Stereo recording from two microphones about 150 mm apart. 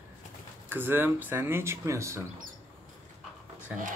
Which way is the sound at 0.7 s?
15° right (ahead or behind).